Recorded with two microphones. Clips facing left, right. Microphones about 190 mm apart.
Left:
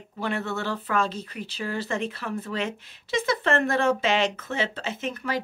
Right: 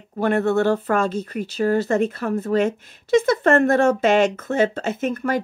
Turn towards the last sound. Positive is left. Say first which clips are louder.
# right 7 dB
turn(degrees=-50)  # may be behind; listen again after turning